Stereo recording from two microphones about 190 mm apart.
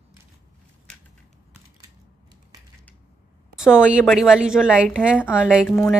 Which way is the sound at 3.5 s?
5° right (ahead or behind).